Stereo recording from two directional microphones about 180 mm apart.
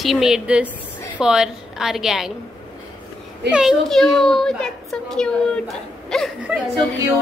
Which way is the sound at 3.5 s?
Centre (ahead or behind).